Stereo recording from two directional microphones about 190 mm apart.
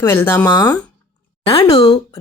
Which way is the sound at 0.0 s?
10° left (ahead or behind).